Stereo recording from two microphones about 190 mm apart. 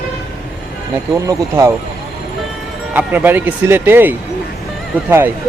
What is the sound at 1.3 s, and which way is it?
Speech, 15° right (ahead or behind).